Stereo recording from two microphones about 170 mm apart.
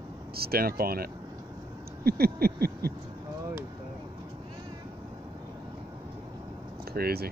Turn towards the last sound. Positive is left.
turn(degrees=-65)  # may be behind; listen again after turning